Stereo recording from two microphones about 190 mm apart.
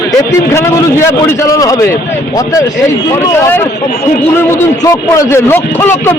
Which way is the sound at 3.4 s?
10° left (ahead or behind).